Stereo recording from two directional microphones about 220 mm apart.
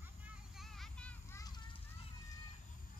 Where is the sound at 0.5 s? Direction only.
Centre (ahead or behind).